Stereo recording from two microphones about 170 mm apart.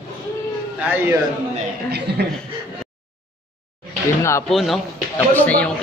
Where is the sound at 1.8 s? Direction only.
70° right (ahead or behind).